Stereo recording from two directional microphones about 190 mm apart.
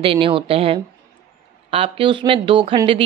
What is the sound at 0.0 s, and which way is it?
Speech, 30° right (ahead or behind).